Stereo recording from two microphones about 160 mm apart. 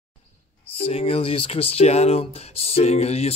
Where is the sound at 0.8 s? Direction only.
40° left (ahead or behind).